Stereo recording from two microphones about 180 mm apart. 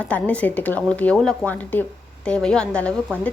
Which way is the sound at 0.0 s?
5° left (ahead or behind).